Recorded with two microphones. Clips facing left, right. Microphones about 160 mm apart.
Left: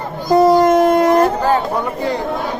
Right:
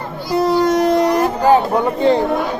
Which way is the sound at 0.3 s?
45° left (ahead or behind).